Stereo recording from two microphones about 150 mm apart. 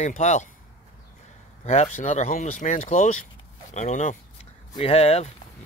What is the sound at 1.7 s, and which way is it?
Speech, 50° left (ahead or behind).